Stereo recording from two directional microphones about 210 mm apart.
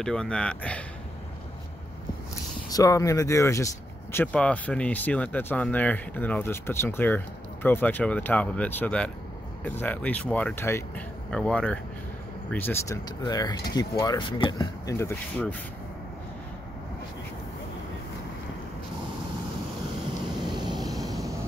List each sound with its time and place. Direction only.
0.0 s speech: 5° left (ahead or behind)
2.7 s speech: 15° left (ahead or behind)
20.5 s vehicle: 20° right (ahead or behind)